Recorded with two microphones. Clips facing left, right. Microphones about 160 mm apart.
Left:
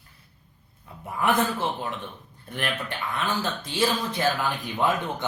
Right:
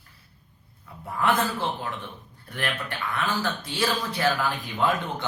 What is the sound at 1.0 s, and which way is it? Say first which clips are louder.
Speech: left 1 dB; 15° left (ahead or behind).